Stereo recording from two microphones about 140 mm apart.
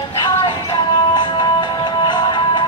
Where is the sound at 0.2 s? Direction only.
35° left (ahead or behind).